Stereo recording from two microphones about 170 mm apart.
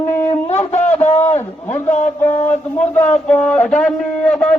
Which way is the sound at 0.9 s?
40° left (ahead or behind).